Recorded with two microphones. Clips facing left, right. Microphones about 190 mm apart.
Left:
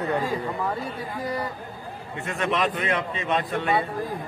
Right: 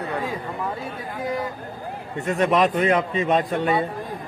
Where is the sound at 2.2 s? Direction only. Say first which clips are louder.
Right 6 dB; 40° right (ahead or behind).